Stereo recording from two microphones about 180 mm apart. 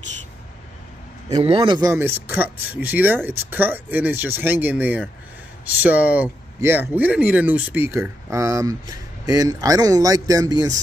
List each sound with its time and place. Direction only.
1.3 s speech: 30° right (ahead or behind)
1.9 s speech: 10° right (ahead or behind)